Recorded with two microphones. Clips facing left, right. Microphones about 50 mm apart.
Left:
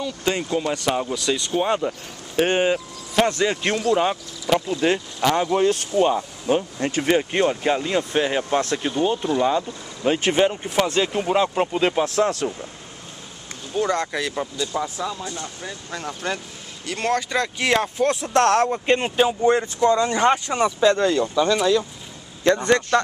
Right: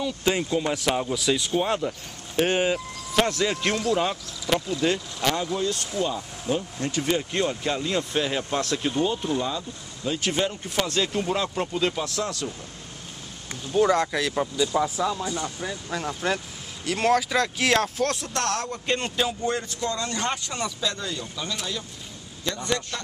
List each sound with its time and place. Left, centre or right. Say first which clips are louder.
0.0 s speech: left 1 dB; centre
1.6 s speech: left 3 dB; centre
4.6 s speech: left 4 dB; left
5.5 s speech: left 8 dB; left
13.7 s speech: right 2 dB; centre
15.6 s speech: right 1 dB; centre
18.3 s speech: left 10 dB; left
21.0 s speech: left 13 dB; left
22.4 s a man's voice: left 10 dB; left